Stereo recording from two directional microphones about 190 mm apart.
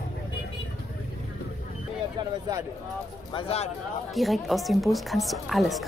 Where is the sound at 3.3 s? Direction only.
30° left (ahead or behind).